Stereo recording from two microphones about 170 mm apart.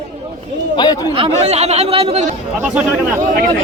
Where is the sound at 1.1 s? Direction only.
35° right (ahead or behind).